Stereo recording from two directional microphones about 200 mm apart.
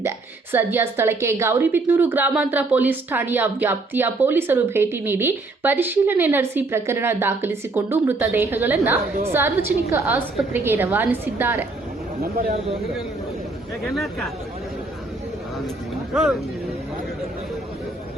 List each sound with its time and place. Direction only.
0.5 s a woman's voice: 10° right (ahead or behind)
12.2 s speech: 50° right (ahead or behind)
13.8 s speech: centre (ahead or behind)